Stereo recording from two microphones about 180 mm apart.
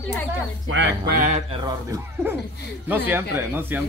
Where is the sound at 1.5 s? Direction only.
25° right (ahead or behind).